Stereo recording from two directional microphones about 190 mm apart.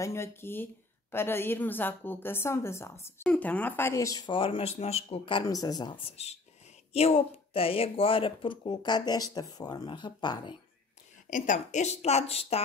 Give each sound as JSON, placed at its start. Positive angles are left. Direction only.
{"t": 0.0, "sound": "a woman's voice", "side_deg": 15}
{"t": 11.2, "sound": "speech", "side_deg": 40}